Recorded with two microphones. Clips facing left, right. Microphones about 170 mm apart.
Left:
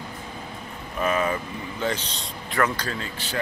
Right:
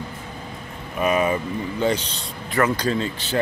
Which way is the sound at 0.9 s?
15° right (ahead or behind).